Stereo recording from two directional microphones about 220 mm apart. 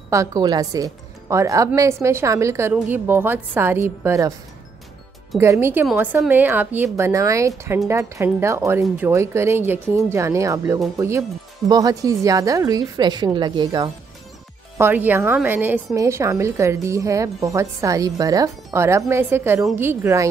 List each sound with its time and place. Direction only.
0.1 s a woman's voice: 15° right (ahead or behind)
5.4 s a woman's voice: 10° right (ahead or behind)
14.8 s a woman's voice: 10° right (ahead or behind)